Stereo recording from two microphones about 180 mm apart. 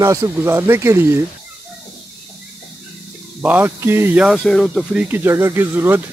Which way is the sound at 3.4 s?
10° right (ahead or behind).